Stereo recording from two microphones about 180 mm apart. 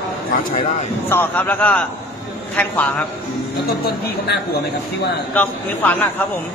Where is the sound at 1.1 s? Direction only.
10° left (ahead or behind).